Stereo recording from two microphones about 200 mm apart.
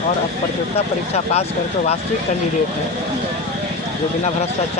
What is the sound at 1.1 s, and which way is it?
Speech, 30° left (ahead or behind).